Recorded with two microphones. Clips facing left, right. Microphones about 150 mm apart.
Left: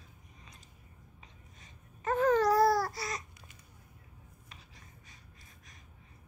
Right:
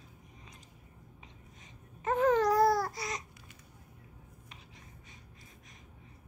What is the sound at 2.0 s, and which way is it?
Babbling, 20° right (ahead or behind).